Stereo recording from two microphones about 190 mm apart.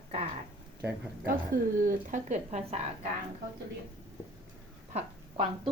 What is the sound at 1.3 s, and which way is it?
Speech, 45° right (ahead or behind).